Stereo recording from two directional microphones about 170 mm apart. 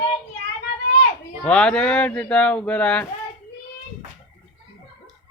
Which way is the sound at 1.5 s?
5° left (ahead or behind).